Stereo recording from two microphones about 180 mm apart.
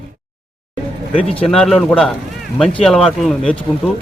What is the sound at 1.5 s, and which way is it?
Speech, centre (ahead or behind).